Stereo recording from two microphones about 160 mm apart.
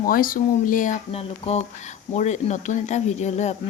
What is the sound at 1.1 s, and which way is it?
Speech, 40° left (ahead or behind).